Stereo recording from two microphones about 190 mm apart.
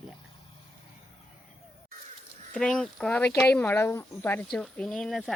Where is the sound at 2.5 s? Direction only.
5° left (ahead or behind).